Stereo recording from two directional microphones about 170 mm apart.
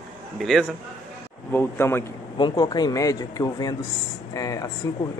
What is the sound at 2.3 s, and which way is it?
A man's voice, 25° left (ahead or behind).